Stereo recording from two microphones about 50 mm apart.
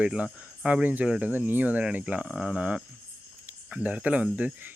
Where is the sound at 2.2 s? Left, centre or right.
Centre.